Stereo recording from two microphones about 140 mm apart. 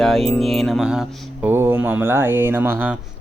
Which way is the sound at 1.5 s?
15° right (ahead or behind).